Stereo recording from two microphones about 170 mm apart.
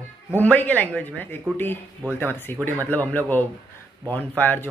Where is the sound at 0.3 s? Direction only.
10° left (ahead or behind).